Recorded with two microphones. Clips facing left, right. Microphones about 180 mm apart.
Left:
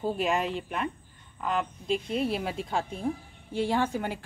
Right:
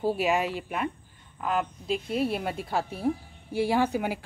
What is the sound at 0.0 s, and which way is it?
A woman's voice, 10° right (ahead or behind).